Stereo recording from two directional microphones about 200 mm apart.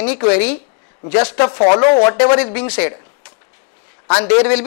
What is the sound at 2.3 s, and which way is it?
Speech, 10° left (ahead or behind).